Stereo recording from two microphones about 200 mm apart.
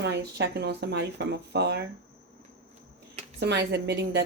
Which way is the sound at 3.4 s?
60° right (ahead or behind).